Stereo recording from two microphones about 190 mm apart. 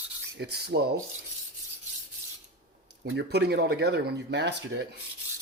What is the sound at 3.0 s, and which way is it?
Speech, 60° right (ahead or behind).